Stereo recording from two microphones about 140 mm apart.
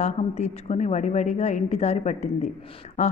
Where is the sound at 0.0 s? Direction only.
55° left (ahead or behind).